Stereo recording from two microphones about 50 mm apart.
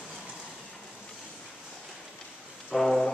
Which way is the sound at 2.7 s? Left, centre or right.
Centre.